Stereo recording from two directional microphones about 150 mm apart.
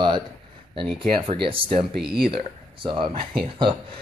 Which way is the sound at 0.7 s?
35° right (ahead or behind).